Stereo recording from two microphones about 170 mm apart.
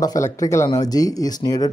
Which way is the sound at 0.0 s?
20° left (ahead or behind).